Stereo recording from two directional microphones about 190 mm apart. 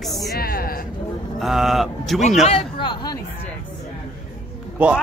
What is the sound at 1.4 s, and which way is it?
Speech, centre (ahead or behind).